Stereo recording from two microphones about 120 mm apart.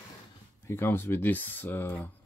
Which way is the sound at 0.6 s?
20° left (ahead or behind).